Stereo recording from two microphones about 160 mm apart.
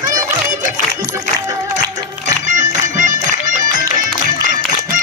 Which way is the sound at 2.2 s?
50° right (ahead or behind).